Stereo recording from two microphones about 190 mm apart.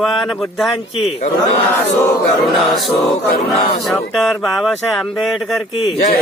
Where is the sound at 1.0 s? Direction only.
35° left (ahead or behind).